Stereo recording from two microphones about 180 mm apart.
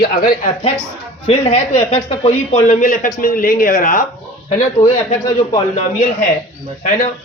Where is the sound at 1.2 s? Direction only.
40° left (ahead or behind).